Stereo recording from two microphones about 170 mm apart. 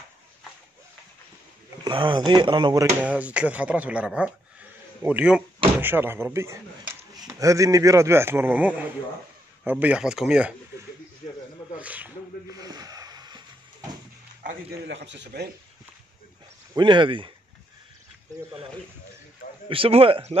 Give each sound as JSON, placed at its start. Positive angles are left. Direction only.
{"t": 1.9, "sound": "speech", "side_deg": -25}
{"t": 3.0, "sound": "a man's voice", "side_deg": -10}
{"t": 11.8, "sound": "snake", "side_deg": -10}
{"t": 12.4, "sound": "a sound", "side_deg": -20}
{"t": 14.9, "sound": "a man's voice", "side_deg": -90}
{"t": 16.7, "sound": "speech", "side_deg": -30}
{"t": 19.7, "sound": "speech", "side_deg": -35}